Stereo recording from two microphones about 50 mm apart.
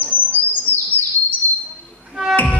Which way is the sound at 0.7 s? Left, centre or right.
Left.